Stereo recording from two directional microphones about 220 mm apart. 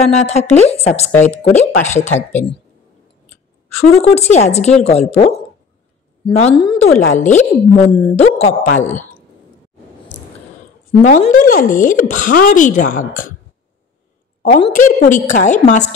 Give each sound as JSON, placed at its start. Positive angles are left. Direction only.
{"t": 0.1, "sound": "speech", "side_deg": 30}
{"t": 3.7, "sound": "speech", "side_deg": 30}
{"t": 11.0, "sound": "speech", "side_deg": 35}
{"t": 14.6, "sound": "speech", "side_deg": 35}